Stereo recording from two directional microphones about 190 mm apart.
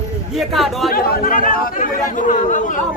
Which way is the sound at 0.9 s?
45° left (ahead or behind).